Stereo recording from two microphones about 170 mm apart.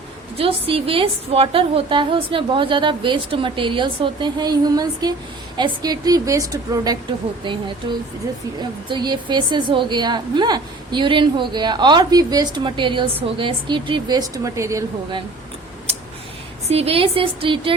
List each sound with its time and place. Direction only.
0.3 s a woman's voice: 35° right (ahead or behind)
8.9 s a woman's voice: 25° right (ahead or behind)
16.6 s a woman's voice: 35° right (ahead or behind)